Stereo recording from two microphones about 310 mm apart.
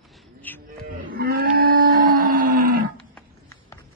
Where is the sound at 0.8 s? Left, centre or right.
Right.